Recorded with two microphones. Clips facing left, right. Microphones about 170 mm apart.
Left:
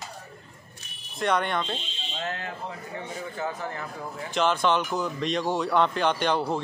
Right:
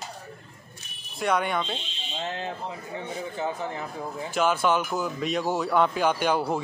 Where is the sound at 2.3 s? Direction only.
25° right (ahead or behind).